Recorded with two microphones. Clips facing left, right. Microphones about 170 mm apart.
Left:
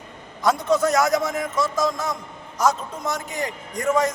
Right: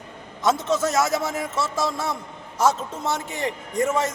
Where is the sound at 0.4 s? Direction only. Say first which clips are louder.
Left 2 dB; 25° right (ahead or behind).